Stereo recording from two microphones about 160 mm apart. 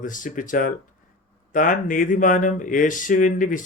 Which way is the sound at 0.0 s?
55° left (ahead or behind).